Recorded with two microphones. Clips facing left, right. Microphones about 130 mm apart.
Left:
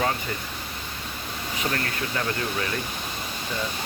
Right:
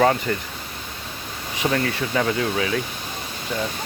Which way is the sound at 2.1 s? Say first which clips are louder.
Right 7 dB; 90° right.